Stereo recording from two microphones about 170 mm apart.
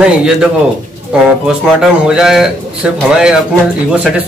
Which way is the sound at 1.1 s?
5° right (ahead or behind).